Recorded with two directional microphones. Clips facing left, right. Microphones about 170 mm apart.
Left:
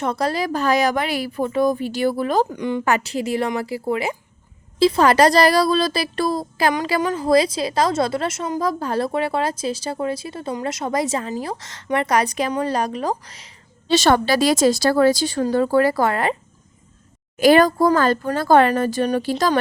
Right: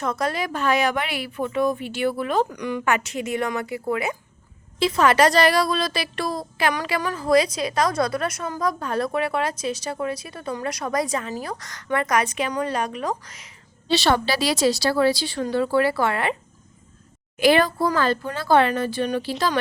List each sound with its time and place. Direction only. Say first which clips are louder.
0.0 s speech: left 3 dB; 30° left (ahead or behind)
2.5 s a woman's voice: left 3 dB; 25° left (ahead or behind)
7.0 s a woman's voice: left 2 dB; 20° left (ahead or behind)
13.9 s speech: left 4 dB; 45° left (ahead or behind)
17.3 s speech: left 5 dB; 40° left (ahead or behind)